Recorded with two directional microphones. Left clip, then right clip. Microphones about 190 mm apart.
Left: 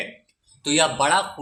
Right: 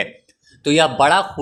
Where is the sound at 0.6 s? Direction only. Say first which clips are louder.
Right 6 dB; 35° right (ahead or behind).